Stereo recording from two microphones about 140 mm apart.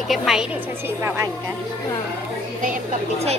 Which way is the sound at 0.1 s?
Centre (ahead or behind).